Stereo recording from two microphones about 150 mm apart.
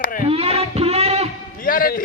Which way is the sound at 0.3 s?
40° right (ahead or behind).